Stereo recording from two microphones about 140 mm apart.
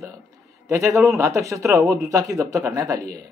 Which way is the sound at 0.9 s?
Centre (ahead or behind).